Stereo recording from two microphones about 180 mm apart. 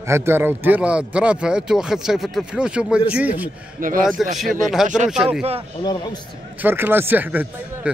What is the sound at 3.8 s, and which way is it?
Speech, 50° right (ahead or behind).